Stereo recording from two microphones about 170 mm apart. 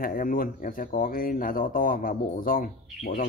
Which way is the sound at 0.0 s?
55° left (ahead or behind).